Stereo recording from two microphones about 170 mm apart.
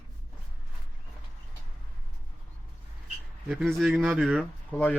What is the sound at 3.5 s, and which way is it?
Speech, centre (ahead or behind).